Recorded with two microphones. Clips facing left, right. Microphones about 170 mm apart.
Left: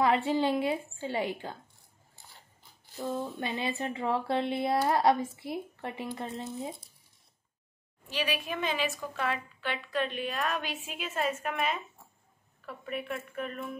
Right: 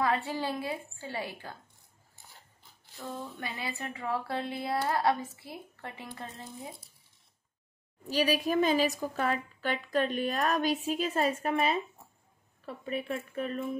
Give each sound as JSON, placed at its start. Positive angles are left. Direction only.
{"t": 0.0, "sound": "speech", "side_deg": 20}
{"t": 3.0, "sound": "speech", "side_deg": 20}
{"t": 8.1, "sound": "a woman's voice", "side_deg": -40}